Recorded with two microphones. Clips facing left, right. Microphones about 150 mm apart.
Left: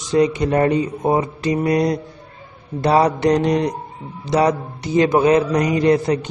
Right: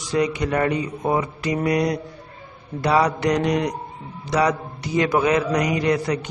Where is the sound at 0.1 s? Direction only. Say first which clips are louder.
Left 5 dB; 25° left (ahead or behind).